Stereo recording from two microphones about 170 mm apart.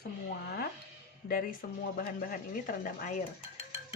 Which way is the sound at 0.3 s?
65° left (ahead or behind).